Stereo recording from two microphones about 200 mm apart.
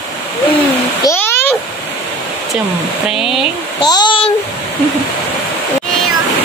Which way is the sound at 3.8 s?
20° left (ahead or behind).